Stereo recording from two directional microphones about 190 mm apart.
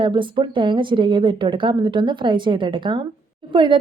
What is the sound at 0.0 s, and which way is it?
A woman's voice, 25° right (ahead or behind).